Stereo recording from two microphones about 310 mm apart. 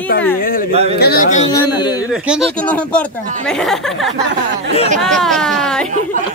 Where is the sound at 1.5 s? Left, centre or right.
Centre.